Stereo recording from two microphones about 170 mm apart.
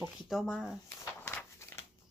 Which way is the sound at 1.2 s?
10° left (ahead or behind).